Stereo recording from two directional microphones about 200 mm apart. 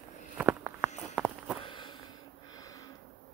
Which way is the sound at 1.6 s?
25° left (ahead or behind).